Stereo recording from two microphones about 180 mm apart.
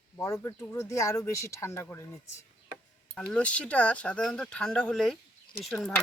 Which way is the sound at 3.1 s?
5° left (ahead or behind).